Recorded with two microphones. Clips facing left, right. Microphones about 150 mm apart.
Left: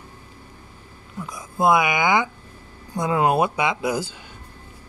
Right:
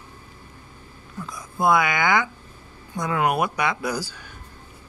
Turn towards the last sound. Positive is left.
turn(degrees=20)  # may be behind; listen again after turning